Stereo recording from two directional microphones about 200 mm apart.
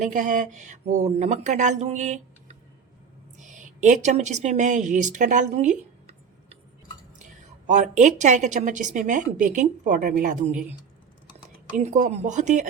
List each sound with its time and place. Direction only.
0.0 s a woman's voice: 40° right (ahead or behind)
7.7 s a woman's voice: 35° right (ahead or behind)
11.8 s a woman's voice: 35° right (ahead or behind)